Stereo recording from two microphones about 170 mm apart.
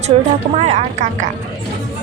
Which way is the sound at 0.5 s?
40° right (ahead or behind).